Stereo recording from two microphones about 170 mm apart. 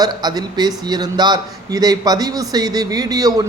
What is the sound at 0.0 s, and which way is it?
A man's voice, 25° right (ahead or behind).